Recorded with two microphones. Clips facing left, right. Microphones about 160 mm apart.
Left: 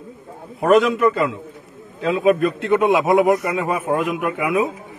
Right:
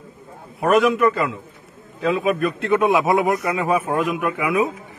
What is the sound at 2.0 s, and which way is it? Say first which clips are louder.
A man's voice: left 3 dB; 20° left (ahead or behind).